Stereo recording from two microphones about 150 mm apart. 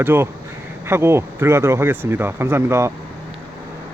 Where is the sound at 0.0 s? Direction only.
15° right (ahead or behind).